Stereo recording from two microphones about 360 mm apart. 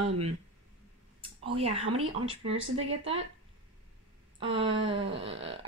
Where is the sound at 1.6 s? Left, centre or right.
Centre.